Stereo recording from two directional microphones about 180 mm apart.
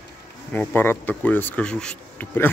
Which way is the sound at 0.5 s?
10° left (ahead or behind).